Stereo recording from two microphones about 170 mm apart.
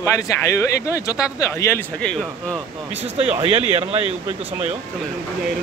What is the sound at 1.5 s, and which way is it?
Speech, 15° left (ahead or behind).